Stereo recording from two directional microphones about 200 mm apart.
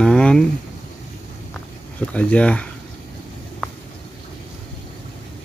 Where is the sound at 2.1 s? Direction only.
5° left (ahead or behind).